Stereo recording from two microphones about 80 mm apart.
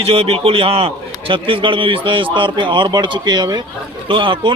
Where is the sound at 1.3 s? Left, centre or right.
Right.